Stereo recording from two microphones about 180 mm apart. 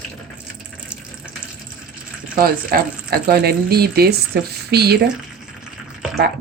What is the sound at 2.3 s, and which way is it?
Speech, 55° right (ahead or behind).